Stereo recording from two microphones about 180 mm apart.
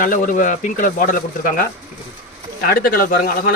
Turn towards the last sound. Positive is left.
turn(degrees=55)  # may be behind; listen again after turning